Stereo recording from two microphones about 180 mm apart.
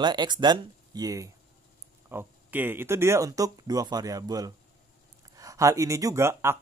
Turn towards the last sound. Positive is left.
turn(degrees=-15)  # may be behind; listen again after turning